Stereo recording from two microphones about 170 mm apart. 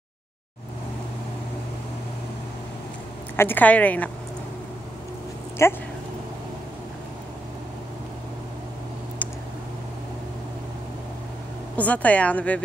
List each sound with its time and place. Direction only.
3.3 s speech: 10° left (ahead or behind)
5.6 s speech: 15° left (ahead or behind)
11.7 s speech: 10° left (ahead or behind)